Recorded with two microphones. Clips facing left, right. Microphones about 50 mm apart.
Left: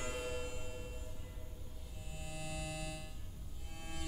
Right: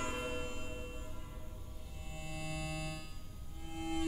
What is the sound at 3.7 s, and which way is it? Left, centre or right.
Music, right.